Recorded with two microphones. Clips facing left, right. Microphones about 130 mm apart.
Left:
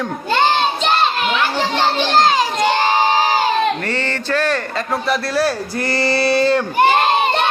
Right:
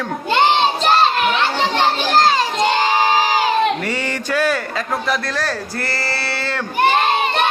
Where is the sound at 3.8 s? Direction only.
10° right (ahead or behind); by 6.6 s 15° left (ahead or behind).